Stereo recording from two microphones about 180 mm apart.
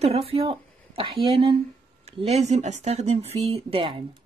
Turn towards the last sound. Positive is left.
turn(degrees=-30)  # may be behind; listen again after turning